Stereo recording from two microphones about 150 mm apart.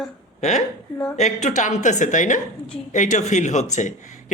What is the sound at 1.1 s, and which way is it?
A man's voice, 50° left (ahead or behind).